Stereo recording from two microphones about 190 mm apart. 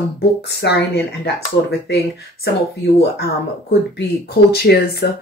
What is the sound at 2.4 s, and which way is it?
Speech, 55° left (ahead or behind).